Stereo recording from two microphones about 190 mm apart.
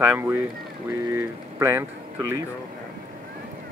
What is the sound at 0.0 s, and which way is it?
Speech, 10° right (ahead or behind).